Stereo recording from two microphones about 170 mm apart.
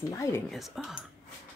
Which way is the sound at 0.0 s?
20° left (ahead or behind).